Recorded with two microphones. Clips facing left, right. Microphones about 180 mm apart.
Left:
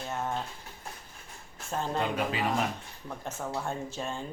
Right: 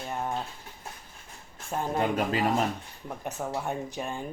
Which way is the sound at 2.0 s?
40° right (ahead or behind).